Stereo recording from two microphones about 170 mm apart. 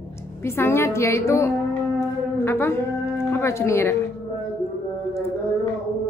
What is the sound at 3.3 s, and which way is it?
Speech, 15° left (ahead or behind).